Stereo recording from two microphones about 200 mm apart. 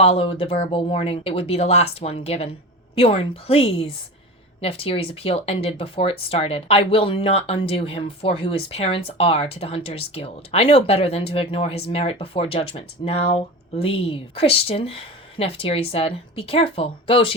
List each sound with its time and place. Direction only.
0.0 s speech: 30° left (ahead or behind)